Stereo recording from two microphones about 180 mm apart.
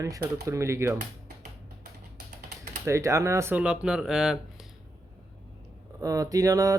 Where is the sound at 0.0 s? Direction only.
15° right (ahead or behind).